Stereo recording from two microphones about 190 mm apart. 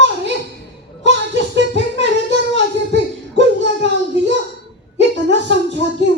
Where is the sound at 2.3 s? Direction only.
65° right (ahead or behind).